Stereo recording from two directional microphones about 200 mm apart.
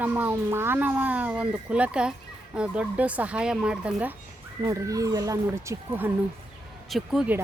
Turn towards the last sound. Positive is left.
turn(degrees=-5)  # may be behind; listen again after turning